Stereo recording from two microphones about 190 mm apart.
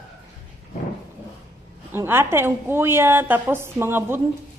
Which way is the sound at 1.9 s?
10° right (ahead or behind).